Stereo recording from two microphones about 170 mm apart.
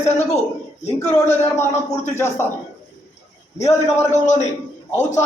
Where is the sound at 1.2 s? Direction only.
15° left (ahead or behind).